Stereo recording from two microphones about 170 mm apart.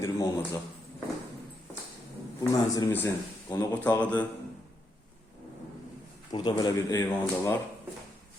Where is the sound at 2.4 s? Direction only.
20° left (ahead or behind).